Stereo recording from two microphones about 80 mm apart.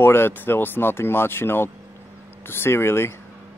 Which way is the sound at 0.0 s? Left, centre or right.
Left.